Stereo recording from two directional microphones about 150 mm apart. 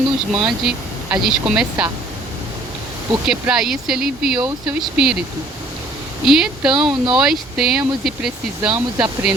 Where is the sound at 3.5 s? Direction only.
5° right (ahead or behind).